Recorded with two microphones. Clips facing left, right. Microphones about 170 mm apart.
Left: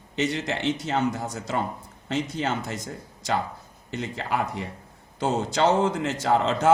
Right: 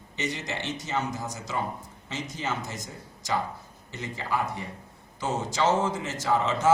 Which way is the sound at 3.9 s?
70° left (ahead or behind).